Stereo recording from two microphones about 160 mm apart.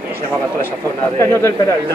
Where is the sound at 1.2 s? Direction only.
15° left (ahead or behind).